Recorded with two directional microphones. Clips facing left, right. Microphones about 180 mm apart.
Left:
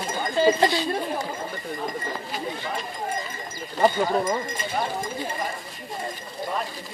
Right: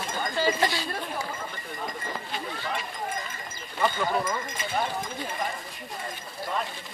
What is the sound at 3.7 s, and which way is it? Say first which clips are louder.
Speech: left 5 dB; 40° left (ahead or behind).